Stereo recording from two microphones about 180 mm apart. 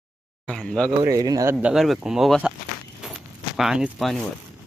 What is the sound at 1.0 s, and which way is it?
Speech, 20° right (ahead or behind).